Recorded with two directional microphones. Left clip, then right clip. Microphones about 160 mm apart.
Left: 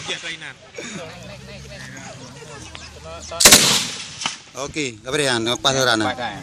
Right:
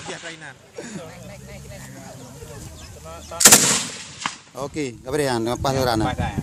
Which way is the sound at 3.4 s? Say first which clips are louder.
Left 2 dB; 30° right (ahead or behind).